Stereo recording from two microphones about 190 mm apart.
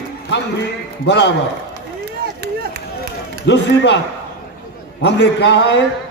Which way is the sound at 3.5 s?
65° left (ahead or behind).